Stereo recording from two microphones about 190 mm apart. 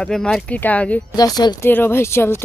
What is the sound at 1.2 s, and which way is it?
Speech, 20° left (ahead or behind).